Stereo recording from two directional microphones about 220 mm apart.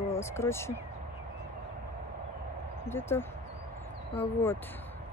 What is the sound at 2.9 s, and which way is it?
Speech, 10° left (ahead or behind).